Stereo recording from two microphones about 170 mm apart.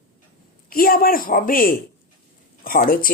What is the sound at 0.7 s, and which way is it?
Speech, 60° left (ahead or behind).